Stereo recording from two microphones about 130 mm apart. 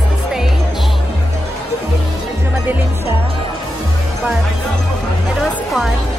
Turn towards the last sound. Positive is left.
turn(degrees=0)  # may be behind; listen again after turning